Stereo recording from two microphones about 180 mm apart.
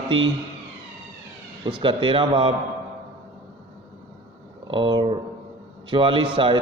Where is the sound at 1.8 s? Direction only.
25° right (ahead or behind).